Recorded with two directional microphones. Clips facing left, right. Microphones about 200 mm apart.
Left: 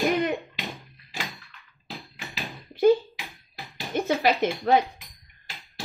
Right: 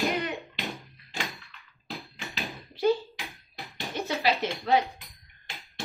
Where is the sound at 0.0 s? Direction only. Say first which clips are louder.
Left 5 dB; centre (ahead or behind).